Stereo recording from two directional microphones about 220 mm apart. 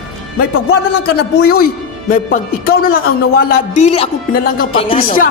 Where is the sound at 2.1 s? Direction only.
40° left (ahead or behind).